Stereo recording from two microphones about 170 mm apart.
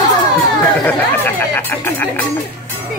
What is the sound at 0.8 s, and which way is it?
A man's voice, 10° left (ahead or behind).